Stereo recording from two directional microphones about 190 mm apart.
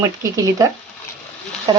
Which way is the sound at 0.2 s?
15° right (ahead or behind).